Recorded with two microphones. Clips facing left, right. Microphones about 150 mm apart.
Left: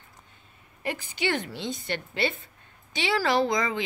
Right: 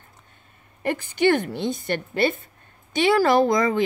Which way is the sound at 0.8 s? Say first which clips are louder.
Right 9 dB; 55° right (ahead or behind).